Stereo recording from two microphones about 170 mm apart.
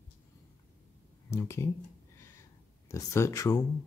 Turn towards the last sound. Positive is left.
turn(degrees=20)  # may be behind; listen again after turning